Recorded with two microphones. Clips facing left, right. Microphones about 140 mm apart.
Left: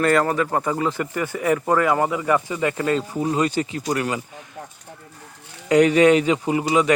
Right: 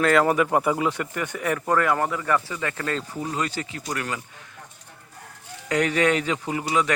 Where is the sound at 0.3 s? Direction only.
10° right (ahead or behind); by 4.2 s 20° left (ahead or behind).